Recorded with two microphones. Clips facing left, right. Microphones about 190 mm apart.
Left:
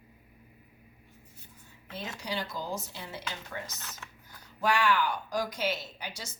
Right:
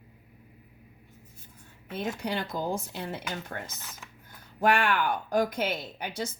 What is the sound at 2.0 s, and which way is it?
A woman's voice, 55° right (ahead or behind).